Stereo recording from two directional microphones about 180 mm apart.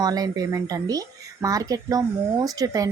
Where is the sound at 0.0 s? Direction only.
20° right (ahead or behind).